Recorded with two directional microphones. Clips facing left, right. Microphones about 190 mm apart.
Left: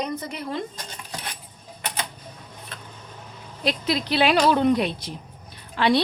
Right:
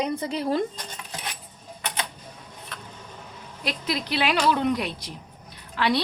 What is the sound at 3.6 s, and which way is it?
Speech, 30° left (ahead or behind).